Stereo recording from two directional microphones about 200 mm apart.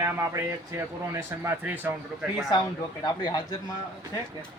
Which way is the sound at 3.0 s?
20° left (ahead or behind).